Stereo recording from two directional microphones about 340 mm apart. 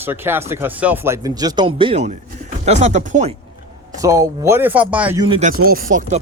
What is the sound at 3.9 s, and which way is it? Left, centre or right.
Speech, centre.